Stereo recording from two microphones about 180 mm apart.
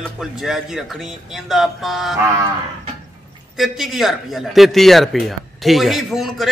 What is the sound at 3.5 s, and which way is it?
Speech, centre (ahead or behind).